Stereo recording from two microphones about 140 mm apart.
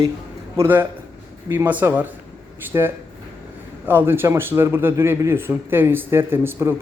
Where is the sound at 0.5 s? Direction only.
15° right (ahead or behind).